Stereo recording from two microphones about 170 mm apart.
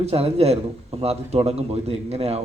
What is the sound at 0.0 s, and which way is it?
Speech, 35° right (ahead or behind).